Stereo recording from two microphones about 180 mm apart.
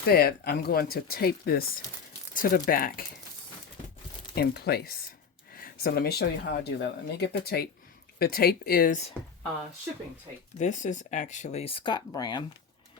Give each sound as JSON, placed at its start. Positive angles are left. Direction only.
{"t": 0.0, "sound": "speech", "side_deg": 60}
{"t": 4.4, "sound": "speech", "side_deg": 60}
{"t": 10.6, "sound": "speech", "side_deg": 40}